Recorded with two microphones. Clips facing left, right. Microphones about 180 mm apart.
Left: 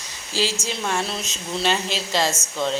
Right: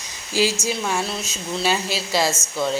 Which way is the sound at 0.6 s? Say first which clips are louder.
Right 2 dB; 5° right (ahead or behind).